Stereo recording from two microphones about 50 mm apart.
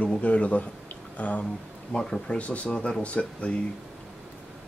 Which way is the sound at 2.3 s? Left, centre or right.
Left.